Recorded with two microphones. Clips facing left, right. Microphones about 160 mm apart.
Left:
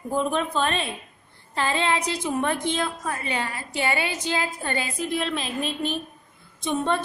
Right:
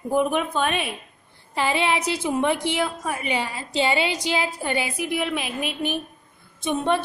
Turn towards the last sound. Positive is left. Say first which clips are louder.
# right 2 dB
turn(degrees=-15)  # may be behind; listen again after turning